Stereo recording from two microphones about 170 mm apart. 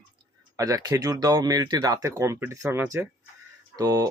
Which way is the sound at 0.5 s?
20° right (ahead or behind).